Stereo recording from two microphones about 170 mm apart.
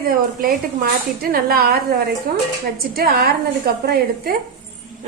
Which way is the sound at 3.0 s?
65° right (ahead or behind).